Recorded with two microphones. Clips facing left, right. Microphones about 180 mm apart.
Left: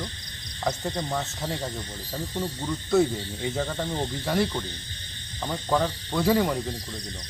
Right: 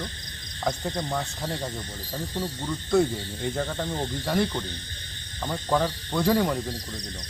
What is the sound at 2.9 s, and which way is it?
Speech, centre (ahead or behind).